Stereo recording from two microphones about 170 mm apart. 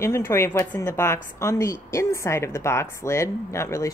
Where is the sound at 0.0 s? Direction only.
15° left (ahead or behind).